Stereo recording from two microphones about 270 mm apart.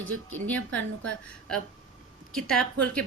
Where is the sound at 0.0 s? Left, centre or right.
Right.